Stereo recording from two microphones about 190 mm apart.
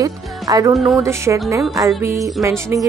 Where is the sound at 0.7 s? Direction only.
Centre (ahead or behind).